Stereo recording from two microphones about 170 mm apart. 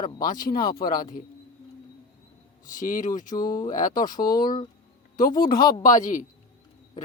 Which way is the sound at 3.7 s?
50° left (ahead or behind).